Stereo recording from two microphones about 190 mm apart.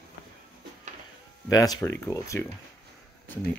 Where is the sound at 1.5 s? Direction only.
20° left (ahead or behind).